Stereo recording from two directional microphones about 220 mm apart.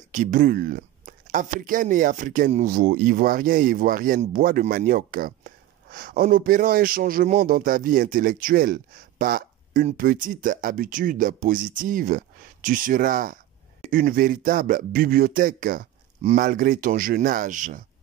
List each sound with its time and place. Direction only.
0.1 s speech: 35° right (ahead or behind)